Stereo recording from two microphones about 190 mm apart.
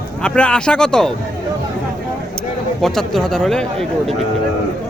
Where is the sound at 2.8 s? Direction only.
Centre (ahead or behind).